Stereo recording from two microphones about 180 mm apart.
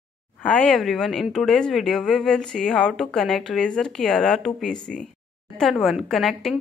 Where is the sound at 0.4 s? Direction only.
5° left (ahead or behind).